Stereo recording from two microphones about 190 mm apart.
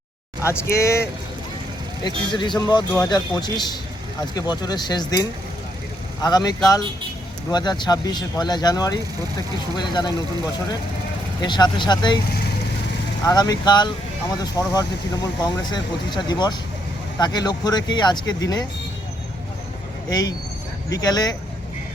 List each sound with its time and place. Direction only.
0.4 s speech: 15° left (ahead or behind)
2.0 s speech: 25° left (ahead or behind)
6.2 s speech: 20° left (ahead or behind)
13.2 s speech: 20° left (ahead or behind)
20.1 s speech: 20° left (ahead or behind)